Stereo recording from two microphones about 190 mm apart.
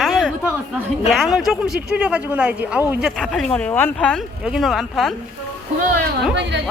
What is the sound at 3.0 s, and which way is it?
Speech, centre (ahead or behind).